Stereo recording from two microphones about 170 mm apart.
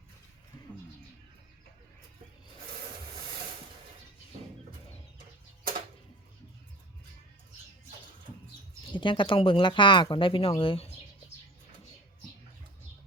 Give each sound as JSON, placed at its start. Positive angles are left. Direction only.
{"t": 8.9, "sound": "speech", "side_deg": 30}